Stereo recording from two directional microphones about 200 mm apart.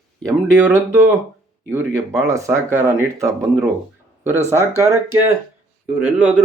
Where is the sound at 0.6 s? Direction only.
10° right (ahead or behind).